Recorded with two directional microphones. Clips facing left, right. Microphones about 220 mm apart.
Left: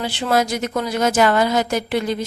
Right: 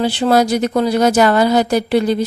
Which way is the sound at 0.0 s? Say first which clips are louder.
Right 6 dB; 35° right (ahead or behind).